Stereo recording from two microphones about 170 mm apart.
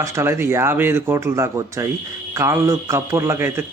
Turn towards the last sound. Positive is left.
turn(degrees=-15)  # may be behind; listen again after turning